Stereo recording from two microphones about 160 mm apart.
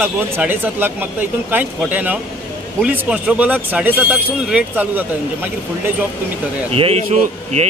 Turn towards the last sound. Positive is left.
turn(degrees=-45)  # may be behind; listen again after turning